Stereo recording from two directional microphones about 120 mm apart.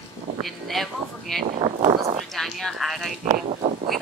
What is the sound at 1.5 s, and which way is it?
Speech, 60° right (ahead or behind).